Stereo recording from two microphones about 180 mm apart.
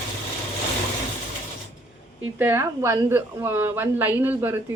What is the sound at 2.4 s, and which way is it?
A woman's voice, 15° right (ahead or behind).